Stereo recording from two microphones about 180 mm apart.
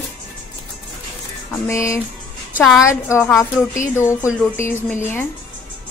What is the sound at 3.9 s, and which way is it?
Speech, 15° left (ahead or behind).